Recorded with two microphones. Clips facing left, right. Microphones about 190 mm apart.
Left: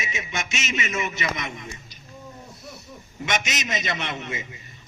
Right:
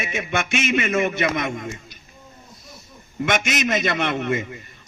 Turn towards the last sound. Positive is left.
turn(degrees=-55)  # may be behind; listen again after turning